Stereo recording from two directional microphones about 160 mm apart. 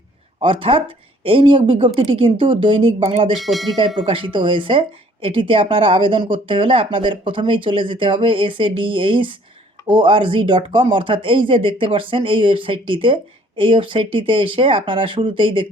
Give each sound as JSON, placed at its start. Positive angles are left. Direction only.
{"t": 0.4, "sound": "speech", "side_deg": -35}
{"t": 3.3, "sound": "speech", "side_deg": 0}
{"t": 3.8, "sound": "speech", "side_deg": -35}